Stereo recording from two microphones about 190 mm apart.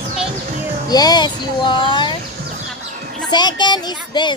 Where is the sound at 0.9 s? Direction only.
20° left (ahead or behind).